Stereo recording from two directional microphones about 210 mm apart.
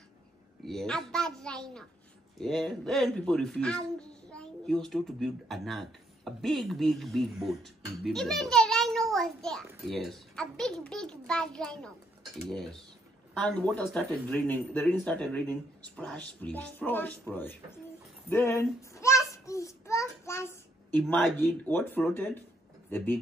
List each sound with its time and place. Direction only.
0.7 s speech: centre (ahead or behind)
13.3 s speech: 5° left (ahead or behind)
18.3 s child singing: 10° left (ahead or behind)
21.0 s speech: 10° left (ahead or behind)